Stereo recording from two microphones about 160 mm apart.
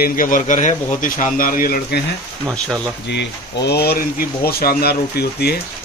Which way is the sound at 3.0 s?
90° left.